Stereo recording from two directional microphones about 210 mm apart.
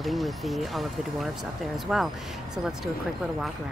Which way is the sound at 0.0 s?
Centre (ahead or behind).